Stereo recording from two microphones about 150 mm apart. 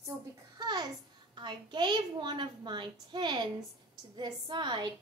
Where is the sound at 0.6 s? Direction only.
30° right (ahead or behind).